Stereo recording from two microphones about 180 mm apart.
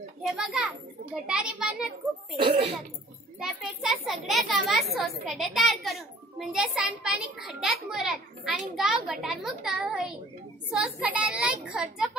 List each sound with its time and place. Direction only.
0.2 s a child's voice: 5° right (ahead or behind)
2.4 s speech: 30° right (ahead or behind)
3.3 s a child's voice: centre (ahead or behind)